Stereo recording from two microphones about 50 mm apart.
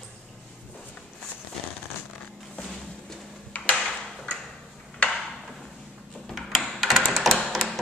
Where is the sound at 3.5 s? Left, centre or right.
Left.